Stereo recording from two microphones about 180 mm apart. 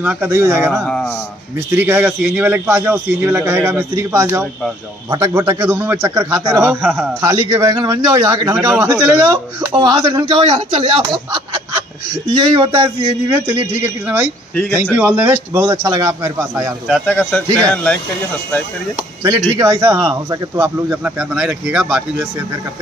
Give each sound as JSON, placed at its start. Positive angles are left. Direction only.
{"t": 0.0, "sound": "a man's voice", "side_deg": -10}
{"t": 0.8, "sound": "a sound", "side_deg": 5}
{"t": 1.8, "sound": "a man's voice", "side_deg": -10}
{"t": 7.2, "sound": "speech", "side_deg": -20}
{"t": 12.3, "sound": "speech", "side_deg": -25}
{"t": 12.8, "sound": "a man's voice", "side_deg": -15}
{"t": 14.5, "sound": "speech", "side_deg": 10}
{"t": 14.8, "sound": "a man's voice", "side_deg": -10}
{"t": 15.6, "sound": "speech", "side_deg": -25}
{"t": 16.8, "sound": "speech", "side_deg": 0}
{"t": 17.1, "sound": "a man's voice", "side_deg": 10}
{"t": 19.2, "sound": "a man's voice", "side_deg": -20}